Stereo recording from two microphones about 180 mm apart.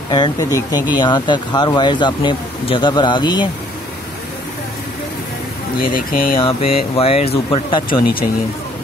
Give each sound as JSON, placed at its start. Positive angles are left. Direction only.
{"t": 0.1, "sound": "speech", "side_deg": 20}
{"t": 5.8, "sound": "speech", "side_deg": 55}
{"t": 6.4, "sound": "speech", "side_deg": 35}